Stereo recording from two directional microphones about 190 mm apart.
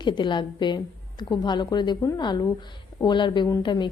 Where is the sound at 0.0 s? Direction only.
25° left (ahead or behind).